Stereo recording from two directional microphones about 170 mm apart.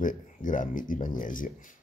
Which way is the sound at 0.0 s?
50° left (ahead or behind).